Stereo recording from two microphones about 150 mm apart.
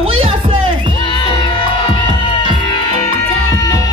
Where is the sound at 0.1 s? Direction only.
35° right (ahead or behind).